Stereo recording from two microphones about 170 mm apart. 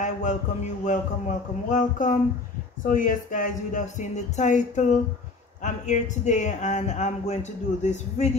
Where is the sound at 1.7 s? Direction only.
50° left (ahead or behind).